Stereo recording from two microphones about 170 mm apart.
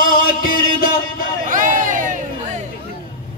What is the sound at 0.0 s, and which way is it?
Music, 55° left (ahead or behind).